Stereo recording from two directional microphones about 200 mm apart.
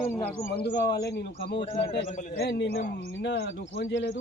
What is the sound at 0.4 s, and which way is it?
Speech, 55° left (ahead or behind).